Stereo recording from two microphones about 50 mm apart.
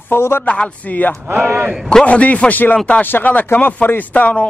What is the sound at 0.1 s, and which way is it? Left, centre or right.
Speech, left.